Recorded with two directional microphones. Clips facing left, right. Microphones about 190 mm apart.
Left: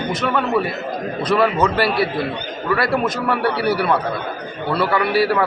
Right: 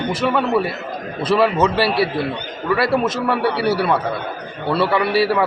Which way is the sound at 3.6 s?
25° right (ahead or behind).